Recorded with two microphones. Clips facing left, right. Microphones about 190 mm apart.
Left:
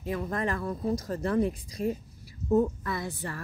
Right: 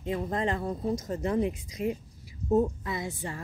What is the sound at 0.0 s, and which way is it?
A woman's voice, 25° right (ahead or behind).